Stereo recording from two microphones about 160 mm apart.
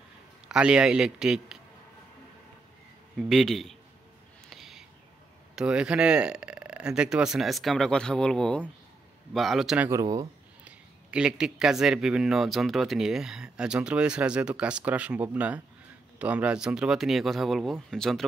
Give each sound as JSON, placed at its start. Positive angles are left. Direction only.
{"t": 0.5, "sound": "speech", "side_deg": -5}
{"t": 3.2, "sound": "speech", "side_deg": 0}
{"t": 4.5, "sound": "a sound", "side_deg": 0}
{"t": 5.6, "sound": "speech", "side_deg": -5}
{"t": 9.8, "sound": "speech", "side_deg": -20}
{"t": 10.6, "sound": "speech", "side_deg": -5}